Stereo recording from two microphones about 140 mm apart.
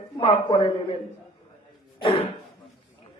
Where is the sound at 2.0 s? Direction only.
45° left (ahead or behind).